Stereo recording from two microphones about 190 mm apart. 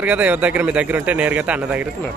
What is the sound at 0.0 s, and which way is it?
Speech, 5° right (ahead or behind).